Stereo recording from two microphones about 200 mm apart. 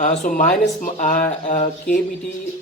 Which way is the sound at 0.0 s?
40° left (ahead or behind).